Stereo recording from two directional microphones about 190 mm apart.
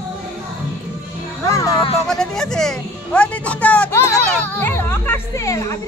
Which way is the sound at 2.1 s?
5° left (ahead or behind).